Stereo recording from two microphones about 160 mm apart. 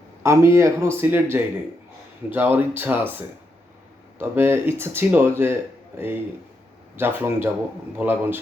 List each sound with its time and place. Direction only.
0.2 s speech: 15° right (ahead or behind)
6.9 s speech: 15° right (ahead or behind)